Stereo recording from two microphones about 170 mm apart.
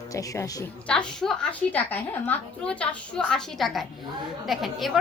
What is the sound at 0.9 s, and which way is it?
A woman's voice, 5° left (ahead or behind).